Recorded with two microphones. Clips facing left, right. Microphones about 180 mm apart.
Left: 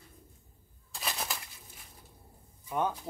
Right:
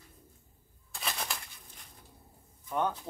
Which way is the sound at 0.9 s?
Centre (ahead or behind).